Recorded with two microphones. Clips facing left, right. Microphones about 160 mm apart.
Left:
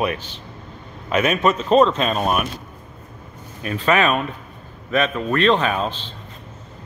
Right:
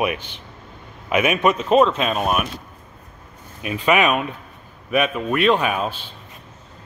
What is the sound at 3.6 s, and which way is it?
A man's voice, 10° right (ahead or behind).